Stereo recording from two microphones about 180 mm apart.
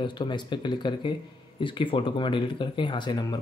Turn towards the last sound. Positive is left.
turn(degrees=25)  # may be behind; listen again after turning